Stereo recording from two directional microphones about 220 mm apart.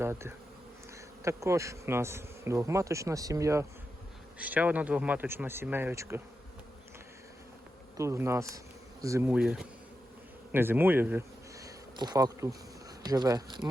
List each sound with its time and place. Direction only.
0.0 s bee: 10° right (ahead or behind)
7.9 s speech: 15° right (ahead or behind)